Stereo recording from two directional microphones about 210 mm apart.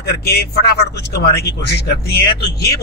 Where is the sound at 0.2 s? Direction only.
50° left (ahead or behind).